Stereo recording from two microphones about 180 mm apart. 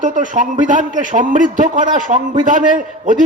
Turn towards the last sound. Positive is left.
turn(degrees=-45)  # may be behind; listen again after turning